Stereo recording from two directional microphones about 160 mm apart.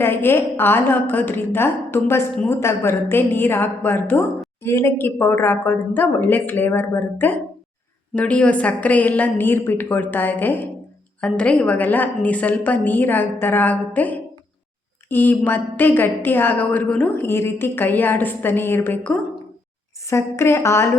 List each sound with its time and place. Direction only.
0.0 s a woman's voice: 15° left (ahead or behind)